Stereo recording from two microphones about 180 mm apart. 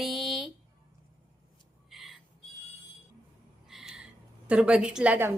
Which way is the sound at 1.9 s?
Centre (ahead or behind).